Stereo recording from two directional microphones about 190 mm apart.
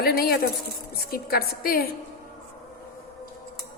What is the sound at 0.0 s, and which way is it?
A woman's voice, 55° left (ahead or behind).